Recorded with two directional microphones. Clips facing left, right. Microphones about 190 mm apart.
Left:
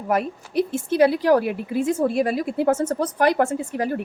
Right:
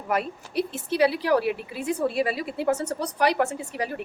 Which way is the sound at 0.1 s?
45° left (ahead or behind).